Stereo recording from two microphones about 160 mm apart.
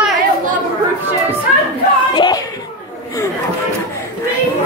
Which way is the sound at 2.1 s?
30° left (ahead or behind).